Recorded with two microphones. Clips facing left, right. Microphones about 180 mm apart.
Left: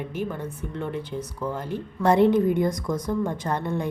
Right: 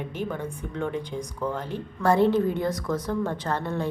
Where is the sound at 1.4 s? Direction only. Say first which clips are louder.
Even; 10° left (ahead or behind).